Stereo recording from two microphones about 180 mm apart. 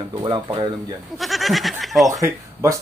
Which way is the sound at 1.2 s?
Centre (ahead or behind).